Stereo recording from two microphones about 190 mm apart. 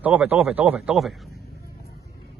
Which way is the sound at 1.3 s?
55° left (ahead or behind).